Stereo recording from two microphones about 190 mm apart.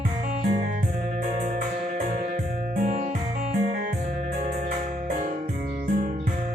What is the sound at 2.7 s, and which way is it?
Music, 45° right (ahead or behind).